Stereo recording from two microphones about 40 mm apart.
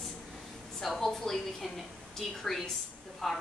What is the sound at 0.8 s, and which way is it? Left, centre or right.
Speech, centre.